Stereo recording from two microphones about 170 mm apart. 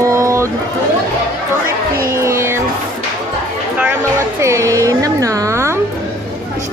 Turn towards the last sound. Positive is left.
turn(degrees=-15)  # may be behind; listen again after turning